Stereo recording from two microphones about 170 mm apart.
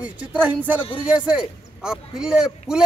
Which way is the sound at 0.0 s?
10° right (ahead or behind).